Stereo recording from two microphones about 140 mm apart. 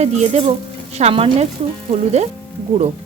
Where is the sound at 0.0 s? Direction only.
50° right (ahead or behind).